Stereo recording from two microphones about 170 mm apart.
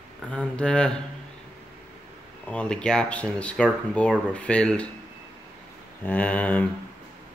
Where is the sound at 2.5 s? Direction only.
5° left (ahead or behind).